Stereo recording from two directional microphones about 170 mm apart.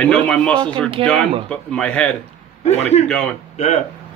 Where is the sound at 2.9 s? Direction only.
40° left (ahead or behind).